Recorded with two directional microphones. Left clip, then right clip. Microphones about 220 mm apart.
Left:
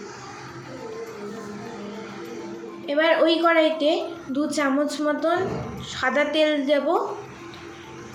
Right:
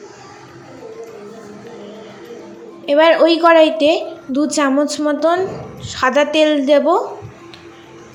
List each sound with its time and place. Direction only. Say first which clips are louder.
2.8 s a woman's voice: right 8 dB; 30° right (ahead or behind)